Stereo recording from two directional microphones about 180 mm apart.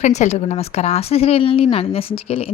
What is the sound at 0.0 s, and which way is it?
A woman's voice, 40° left (ahead or behind).